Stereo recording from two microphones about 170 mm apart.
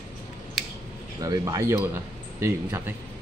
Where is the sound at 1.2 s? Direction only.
20° right (ahead or behind).